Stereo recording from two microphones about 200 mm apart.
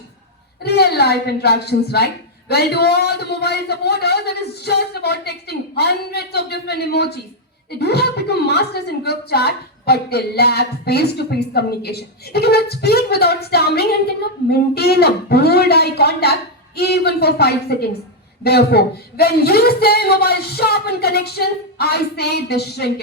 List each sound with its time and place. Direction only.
0.6 s a woman's voice: 55° left (ahead or behind)